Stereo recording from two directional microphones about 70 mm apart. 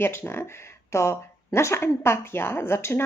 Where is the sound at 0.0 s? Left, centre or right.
Left.